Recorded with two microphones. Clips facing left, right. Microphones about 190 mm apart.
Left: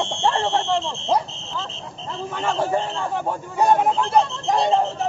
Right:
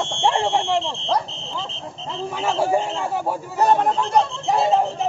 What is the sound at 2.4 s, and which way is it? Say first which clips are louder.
A man's voice: right 2 dB; 10° right (ahead or behind).